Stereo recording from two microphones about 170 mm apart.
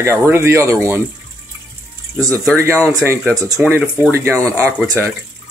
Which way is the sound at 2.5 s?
15° right (ahead or behind).